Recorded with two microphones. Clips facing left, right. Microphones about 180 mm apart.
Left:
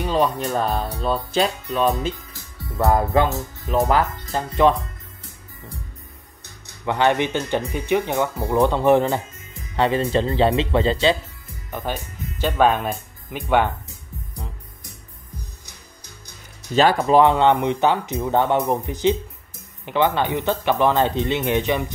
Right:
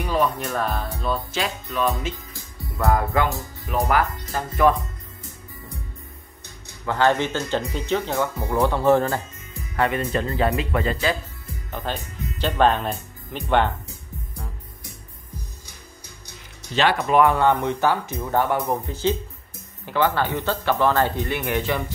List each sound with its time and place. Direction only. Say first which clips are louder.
0.0 s music: left 2 dB; 20° left (ahead or behind)
0.4 s speech: left 3 dB; 35° left (ahead or behind)
6.9 s speech: left 1 dB; 15° left (ahead or behind)
11.7 s speech: left 2 dB; 10° left (ahead or behind)
16.7 s speech: left 3 dB; 35° left (ahead or behind); by 21.9 s 20° left (ahead or behind)